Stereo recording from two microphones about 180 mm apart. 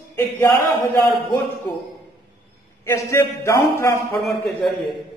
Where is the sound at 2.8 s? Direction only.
15° left (ahead or behind).